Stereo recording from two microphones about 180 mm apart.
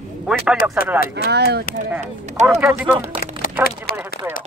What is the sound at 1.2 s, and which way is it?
Speech, 65° right (ahead or behind).